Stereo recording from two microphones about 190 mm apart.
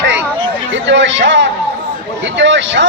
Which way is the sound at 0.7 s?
70° right (ahead or behind).